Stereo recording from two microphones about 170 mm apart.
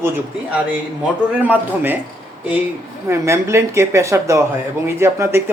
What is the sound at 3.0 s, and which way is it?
A man's voice, 15° right (ahead or behind).